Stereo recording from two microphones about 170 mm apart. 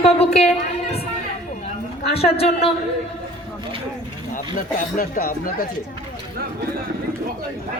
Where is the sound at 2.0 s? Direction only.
35° left (ahead or behind).